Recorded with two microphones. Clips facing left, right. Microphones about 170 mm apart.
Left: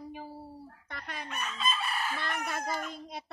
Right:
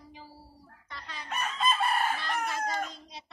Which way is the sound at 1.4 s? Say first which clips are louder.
Right 6 dB; 55° right (ahead or behind).